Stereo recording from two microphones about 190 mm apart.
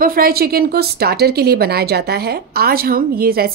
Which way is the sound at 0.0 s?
50° right (ahead or behind).